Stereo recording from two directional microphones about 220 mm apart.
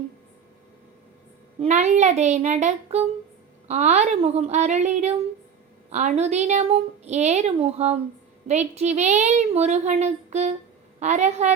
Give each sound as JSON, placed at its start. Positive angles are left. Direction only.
{"t": 1.6, "sound": "a woman's voice", "side_deg": -30}